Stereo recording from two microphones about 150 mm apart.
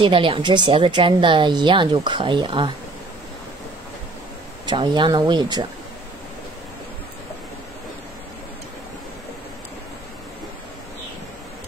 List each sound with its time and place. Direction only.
0.0 s speech: 35° right (ahead or behind)
4.6 s speech: 30° right (ahead or behind)